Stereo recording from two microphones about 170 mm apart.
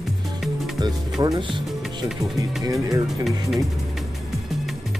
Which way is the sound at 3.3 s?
Centre (ahead or behind).